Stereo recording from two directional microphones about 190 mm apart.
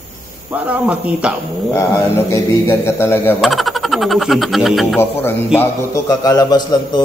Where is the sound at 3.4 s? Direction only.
Centre (ahead or behind).